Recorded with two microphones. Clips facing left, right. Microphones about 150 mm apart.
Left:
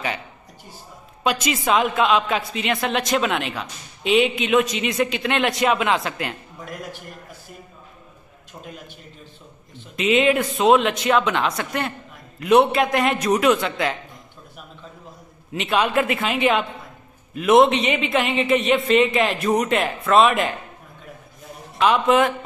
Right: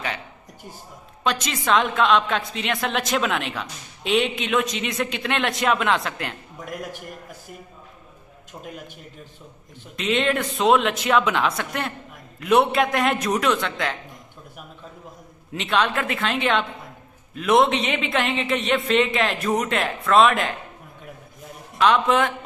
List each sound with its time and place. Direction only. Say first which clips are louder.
1.2 s a woman's voice: left 3 dB; 5° left (ahead or behind)
8.6 s a man's voice: right 1 dB; 5° right (ahead or behind)
9.9 s a woman's voice: left 4 dB; 5° left (ahead or behind)
15.5 s a woman's voice: left 3 dB; 5° left (ahead or behind)
21.7 s a woman's voice: left 2 dB; 5° left (ahead or behind)